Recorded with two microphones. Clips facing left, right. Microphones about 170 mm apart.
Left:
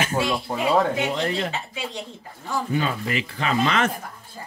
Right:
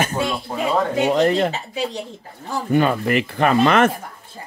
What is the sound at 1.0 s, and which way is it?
Speech, 45° right (ahead or behind).